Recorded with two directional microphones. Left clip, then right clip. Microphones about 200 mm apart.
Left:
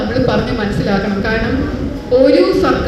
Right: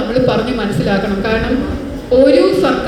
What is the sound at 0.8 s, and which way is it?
Speech, 60° right (ahead or behind).